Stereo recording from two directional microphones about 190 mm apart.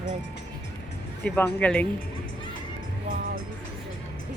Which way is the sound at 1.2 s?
10° left (ahead or behind).